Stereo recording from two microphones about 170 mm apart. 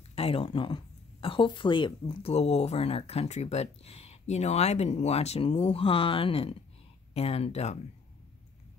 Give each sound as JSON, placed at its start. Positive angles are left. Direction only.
{"t": 0.1, "sound": "speech", "side_deg": 35}